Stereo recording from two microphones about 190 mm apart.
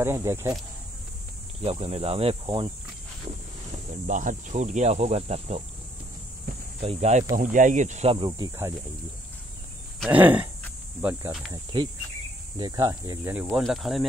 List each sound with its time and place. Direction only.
0.0 s speech: 15° right (ahead or behind)
1.6 s speech: 30° right (ahead or behind)
4.1 s speech: 40° right (ahead or behind)
6.8 s speech: 30° right (ahead or behind)
8.3 s speech: 20° right (ahead or behind)
10.0 s speech: 10° right (ahead or behind)
11.5 s cricket: 25° right (ahead or behind)
12.5 s speech: 20° right (ahead or behind); by 14.0 s centre (ahead or behind)